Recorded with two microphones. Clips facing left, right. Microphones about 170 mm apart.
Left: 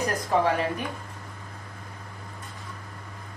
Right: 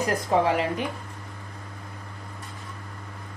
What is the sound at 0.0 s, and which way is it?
Speech, 20° right (ahead or behind).